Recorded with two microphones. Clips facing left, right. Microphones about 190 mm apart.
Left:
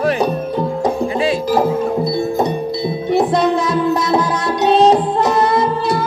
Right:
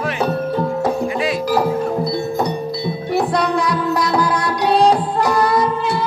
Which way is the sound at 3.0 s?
25° left (ahead or behind).